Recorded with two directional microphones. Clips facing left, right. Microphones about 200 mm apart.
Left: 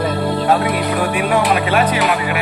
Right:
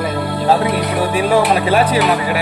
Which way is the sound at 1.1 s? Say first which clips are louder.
Right 4 dB; 35° right (ahead or behind).